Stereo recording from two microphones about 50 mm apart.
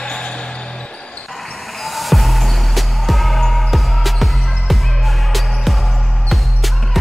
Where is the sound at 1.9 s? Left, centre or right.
Centre.